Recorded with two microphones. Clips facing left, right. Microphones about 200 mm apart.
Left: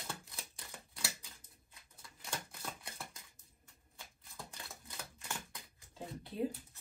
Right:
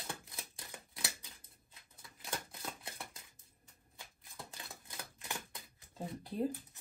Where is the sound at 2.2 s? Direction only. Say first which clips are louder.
Right 1 dB; 20° right (ahead or behind).